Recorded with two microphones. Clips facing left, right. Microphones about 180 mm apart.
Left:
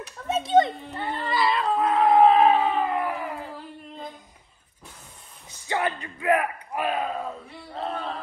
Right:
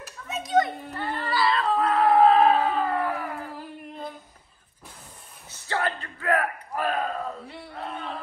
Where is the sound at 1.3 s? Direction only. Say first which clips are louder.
Even; 20° left (ahead or behind).